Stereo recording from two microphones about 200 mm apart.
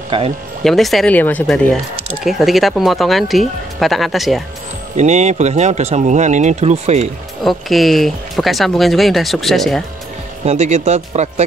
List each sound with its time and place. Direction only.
0.7 s speech: centre (ahead or behind)
4.9 s speech: 35° right (ahead or behind)
7.4 s speech: centre (ahead or behind)
10.4 s speech: 35° right (ahead or behind)